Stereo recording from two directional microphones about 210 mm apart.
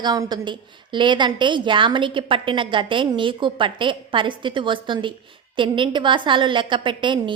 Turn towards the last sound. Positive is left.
turn(degrees=-20)  # may be behind; listen again after turning